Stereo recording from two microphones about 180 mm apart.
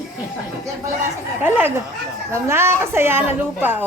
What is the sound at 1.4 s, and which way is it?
A woman's voice, 10° right (ahead or behind).